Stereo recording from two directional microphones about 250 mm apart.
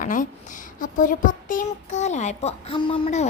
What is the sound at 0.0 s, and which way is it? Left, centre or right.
A woman's voice, left.